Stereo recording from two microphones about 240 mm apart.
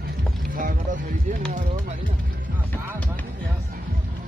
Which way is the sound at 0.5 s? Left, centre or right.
Right.